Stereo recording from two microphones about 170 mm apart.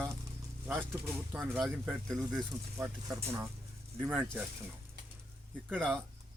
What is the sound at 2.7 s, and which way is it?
Speech, 15° right (ahead or behind).